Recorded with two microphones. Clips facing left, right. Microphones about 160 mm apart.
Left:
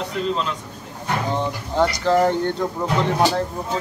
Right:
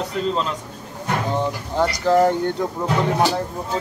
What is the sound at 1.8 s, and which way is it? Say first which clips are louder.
Speech: right 1 dB; 10° right (ahead or behind).